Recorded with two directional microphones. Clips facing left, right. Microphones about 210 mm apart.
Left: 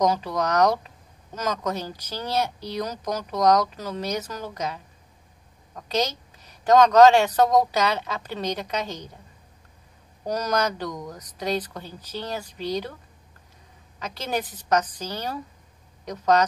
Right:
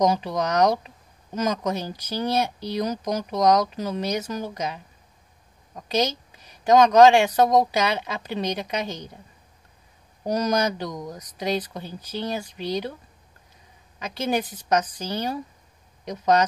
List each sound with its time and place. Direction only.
0.0 s speech: 15° right (ahead or behind)
6.6 s speech: 10° right (ahead or behind)
10.2 s speech: 15° right (ahead or behind)
13.9 s speech: 15° right (ahead or behind)